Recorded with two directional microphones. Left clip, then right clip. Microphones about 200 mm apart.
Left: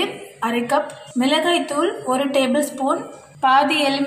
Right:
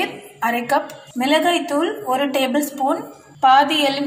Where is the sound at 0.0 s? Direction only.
20° right (ahead or behind).